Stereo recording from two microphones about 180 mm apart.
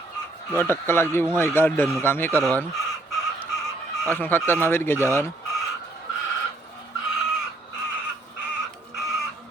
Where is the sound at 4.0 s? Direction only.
10° left (ahead or behind).